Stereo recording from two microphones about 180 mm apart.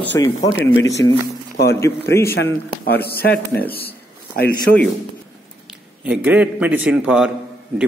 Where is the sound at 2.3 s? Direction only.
65° left (ahead or behind).